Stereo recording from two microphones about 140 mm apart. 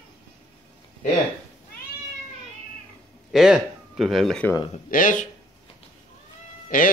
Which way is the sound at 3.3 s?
5° right (ahead or behind).